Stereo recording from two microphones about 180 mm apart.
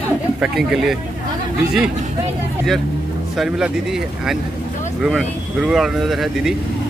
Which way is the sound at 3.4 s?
5° right (ahead or behind).